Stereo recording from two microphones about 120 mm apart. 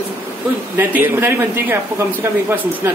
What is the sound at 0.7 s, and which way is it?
A man's voice, 15° right (ahead or behind).